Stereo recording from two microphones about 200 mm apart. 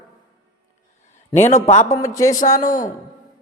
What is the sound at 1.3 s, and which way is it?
Speech, 35° left (ahead or behind).